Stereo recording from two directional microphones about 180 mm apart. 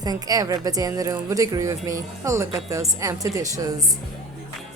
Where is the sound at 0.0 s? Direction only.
20° right (ahead or behind).